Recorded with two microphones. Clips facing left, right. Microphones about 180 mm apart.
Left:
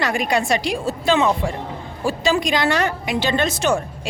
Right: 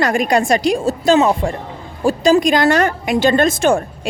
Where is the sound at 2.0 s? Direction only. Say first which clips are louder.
Right 7 dB; 45° right (ahead or behind).